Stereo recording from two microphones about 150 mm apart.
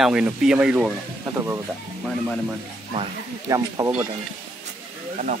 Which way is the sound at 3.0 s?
25° right (ahead or behind).